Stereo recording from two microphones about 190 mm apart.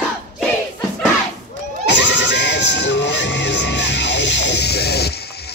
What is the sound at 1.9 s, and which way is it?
Music, 70° left (ahead or behind).